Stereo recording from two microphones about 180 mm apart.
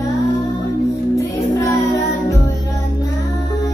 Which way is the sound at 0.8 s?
15° left (ahead or behind).